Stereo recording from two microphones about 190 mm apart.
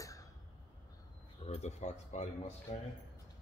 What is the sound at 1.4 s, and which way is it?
Speech, 35° left (ahead or behind).